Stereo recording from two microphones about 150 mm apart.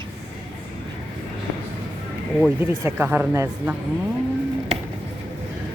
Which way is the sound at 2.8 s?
15° right (ahead or behind).